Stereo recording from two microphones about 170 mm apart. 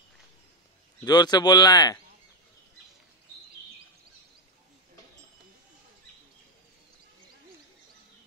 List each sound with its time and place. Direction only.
1.0 s speech: 25° left (ahead or behind)